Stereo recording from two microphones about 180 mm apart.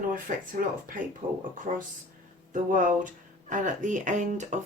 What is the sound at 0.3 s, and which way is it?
Speech, 50° right (ahead or behind).